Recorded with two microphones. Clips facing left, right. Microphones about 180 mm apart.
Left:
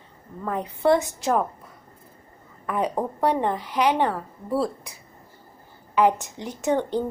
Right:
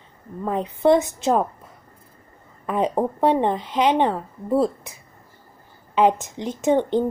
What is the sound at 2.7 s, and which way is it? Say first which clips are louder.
A woman's voice: right 4 dB; 20° right (ahead or behind).